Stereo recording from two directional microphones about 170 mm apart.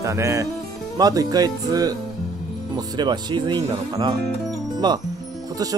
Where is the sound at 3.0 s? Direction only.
25° right (ahead or behind).